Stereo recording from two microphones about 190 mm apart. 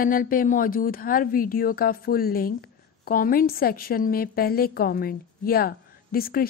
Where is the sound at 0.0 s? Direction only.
45° left (ahead or behind).